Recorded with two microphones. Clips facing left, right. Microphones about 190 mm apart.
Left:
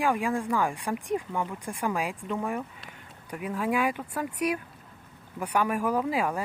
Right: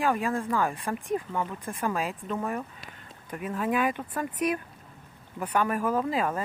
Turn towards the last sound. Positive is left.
turn(degrees=10)  # may be behind; listen again after turning